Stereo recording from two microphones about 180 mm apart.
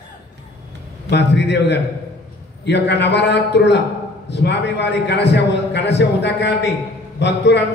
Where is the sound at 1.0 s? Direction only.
70° left (ahead or behind).